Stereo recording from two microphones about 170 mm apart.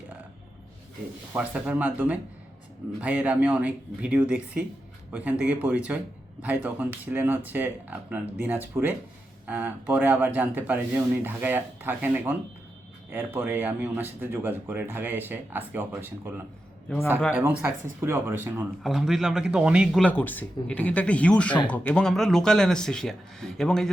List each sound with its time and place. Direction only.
1.3 s speech: 10° right (ahead or behind)
16.9 s speech: 5° left (ahead or behind)
17.3 s speech: 10° right (ahead or behind)
18.8 s speech: centre (ahead or behind)
20.1 s speech: 10° left (ahead or behind)